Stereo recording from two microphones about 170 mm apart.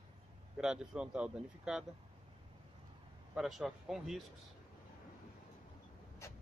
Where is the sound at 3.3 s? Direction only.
Centre (ahead or behind).